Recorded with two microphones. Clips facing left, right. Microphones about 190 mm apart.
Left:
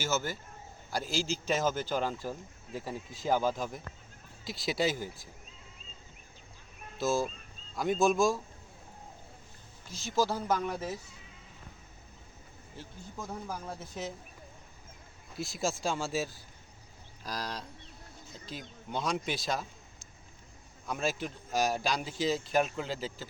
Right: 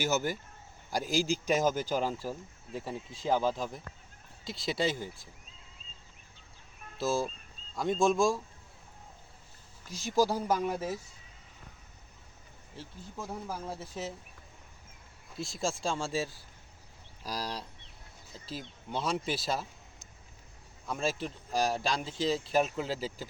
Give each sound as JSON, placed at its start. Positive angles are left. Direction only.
{"t": 0.0, "sound": "a man's voice", "side_deg": -15}
{"t": 4.4, "sound": "speech", "side_deg": -25}
{"t": 4.7, "sound": "speech", "side_deg": 5}
{"t": 7.0, "sound": "speech", "side_deg": 0}
{"t": 9.9, "sound": "a man's voice", "side_deg": -10}
{"t": 12.8, "sound": "speech", "side_deg": -5}
{"t": 15.4, "sound": "speech", "side_deg": -25}
{"t": 15.8, "sound": "speech", "side_deg": 5}
{"t": 17.2, "sound": "a man's voice", "side_deg": -10}
{"t": 18.3, "sound": "speech", "side_deg": -35}
{"t": 18.9, "sound": "speech", "side_deg": 0}
{"t": 20.8, "sound": "a man's voice", "side_deg": 0}